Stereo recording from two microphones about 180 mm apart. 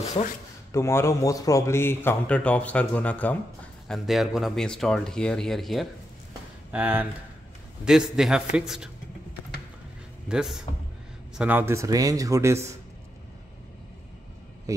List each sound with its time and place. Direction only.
0.7 s speech: 15° left (ahead or behind)
6.7 s speech: 10° right (ahead or behind)
10.2 s speech: 5° right (ahead or behind)